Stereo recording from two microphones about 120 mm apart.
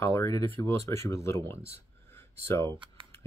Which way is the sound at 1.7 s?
20° left (ahead or behind).